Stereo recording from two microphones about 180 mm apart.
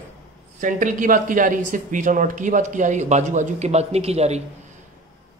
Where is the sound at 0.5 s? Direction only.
45° right (ahead or behind).